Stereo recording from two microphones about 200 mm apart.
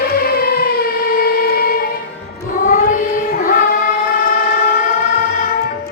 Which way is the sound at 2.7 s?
45° left (ahead or behind).